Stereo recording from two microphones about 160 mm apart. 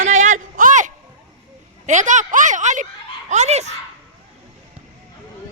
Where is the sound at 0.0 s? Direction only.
50° right (ahead or behind).